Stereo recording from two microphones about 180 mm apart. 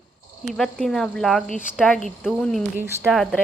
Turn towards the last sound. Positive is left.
turn(degrees=5)  # may be behind; listen again after turning